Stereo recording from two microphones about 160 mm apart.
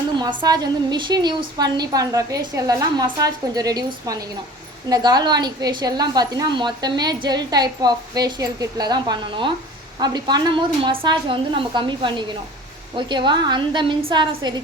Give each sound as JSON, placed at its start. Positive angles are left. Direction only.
{"t": 0.2, "sound": "a woman's voice", "side_deg": -25}